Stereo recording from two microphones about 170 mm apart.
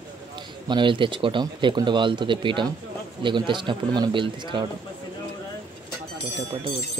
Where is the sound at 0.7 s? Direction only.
30° right (ahead or behind).